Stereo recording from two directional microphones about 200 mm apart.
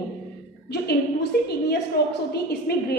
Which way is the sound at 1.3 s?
50° left (ahead or behind).